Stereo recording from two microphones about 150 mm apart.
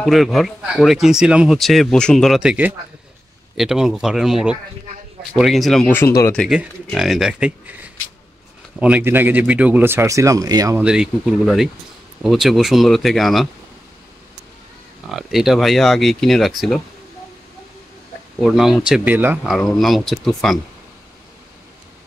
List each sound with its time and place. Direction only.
0.0 s speech: centre (ahead or behind)
3.5 s speech: 5° right (ahead or behind)
5.9 s speech: 15° left (ahead or behind)
6.5 s speech: 5° right (ahead or behind); by 10.8 s 25° right (ahead or behind)
10.8 s speech: 5° right (ahead or behind)
15.0 s speech: centre (ahead or behind)
18.4 s speech: centre (ahead or behind)
19.5 s speech: centre (ahead or behind)